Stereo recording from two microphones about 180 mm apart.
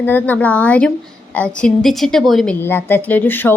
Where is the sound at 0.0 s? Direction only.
10° left (ahead or behind).